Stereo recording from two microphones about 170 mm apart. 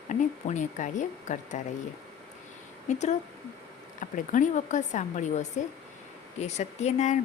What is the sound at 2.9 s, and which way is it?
Speech, 45° left (ahead or behind).